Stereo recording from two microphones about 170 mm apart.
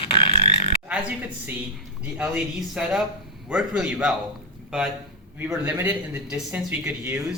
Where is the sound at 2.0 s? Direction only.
5° right (ahead or behind).